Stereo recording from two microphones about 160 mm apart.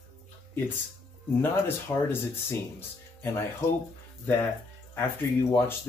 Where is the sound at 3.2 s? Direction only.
15° left (ahead or behind).